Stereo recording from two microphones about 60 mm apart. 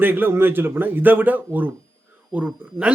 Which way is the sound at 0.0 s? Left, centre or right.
Right.